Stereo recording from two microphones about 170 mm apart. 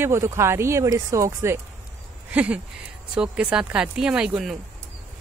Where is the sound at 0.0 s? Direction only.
15° right (ahead or behind).